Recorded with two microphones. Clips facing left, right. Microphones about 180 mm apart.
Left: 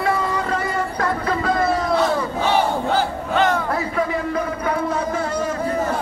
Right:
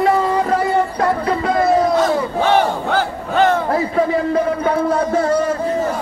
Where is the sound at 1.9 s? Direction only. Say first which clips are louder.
Right 4 dB; 60° right (ahead or behind).